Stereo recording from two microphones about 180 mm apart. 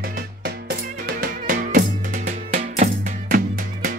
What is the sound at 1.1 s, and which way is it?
Music, 55° right (ahead or behind).